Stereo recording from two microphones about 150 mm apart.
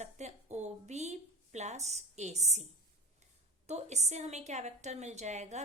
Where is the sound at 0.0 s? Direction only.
50° right (ahead or behind).